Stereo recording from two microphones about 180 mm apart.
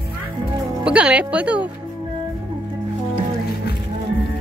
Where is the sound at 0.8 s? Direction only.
5° right (ahead or behind).